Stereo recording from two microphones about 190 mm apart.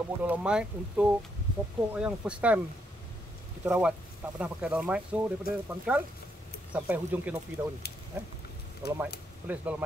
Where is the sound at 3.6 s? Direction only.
5° right (ahead or behind).